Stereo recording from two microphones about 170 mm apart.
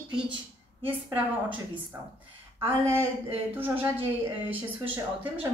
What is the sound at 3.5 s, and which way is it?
Speech, 10° right (ahead or behind).